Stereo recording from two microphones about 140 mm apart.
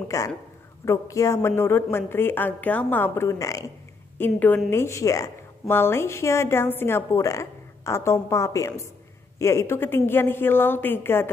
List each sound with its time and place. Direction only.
0.1 s a woman's voice: 25° left (ahead or behind)